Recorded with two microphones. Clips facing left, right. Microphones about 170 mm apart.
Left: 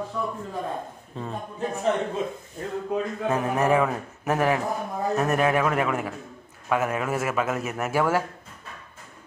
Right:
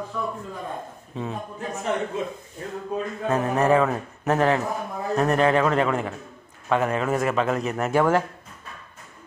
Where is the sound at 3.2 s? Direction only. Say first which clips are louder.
Right 3 dB; 10° left (ahead or behind).